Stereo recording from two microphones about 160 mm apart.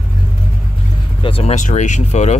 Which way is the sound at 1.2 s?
35° left (ahead or behind).